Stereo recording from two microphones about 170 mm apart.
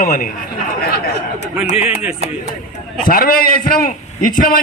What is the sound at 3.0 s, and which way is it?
A man's voice, 60° left (ahead or behind).